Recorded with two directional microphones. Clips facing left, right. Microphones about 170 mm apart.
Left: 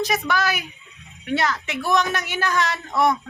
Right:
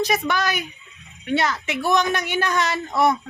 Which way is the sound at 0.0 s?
Centre (ahead or behind).